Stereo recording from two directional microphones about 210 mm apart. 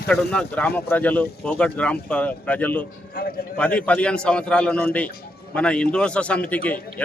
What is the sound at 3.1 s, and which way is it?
Speech, 45° left (ahead or behind).